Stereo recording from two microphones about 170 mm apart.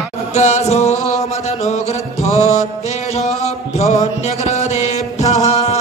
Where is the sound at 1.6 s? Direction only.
40° left (ahead or behind).